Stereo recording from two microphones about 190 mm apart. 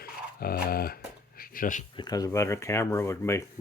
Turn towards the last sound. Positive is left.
turn(degrees=15)  # may be behind; listen again after turning